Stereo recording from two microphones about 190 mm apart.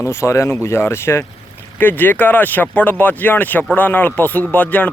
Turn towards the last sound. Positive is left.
turn(degrees=10)  # may be behind; listen again after turning